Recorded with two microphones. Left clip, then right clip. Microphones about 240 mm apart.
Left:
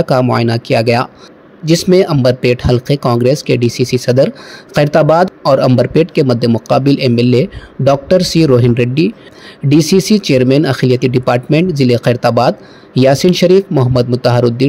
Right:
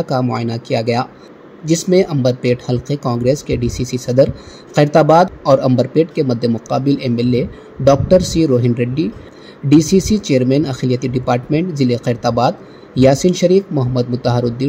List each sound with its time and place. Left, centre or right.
0.0 s speech: left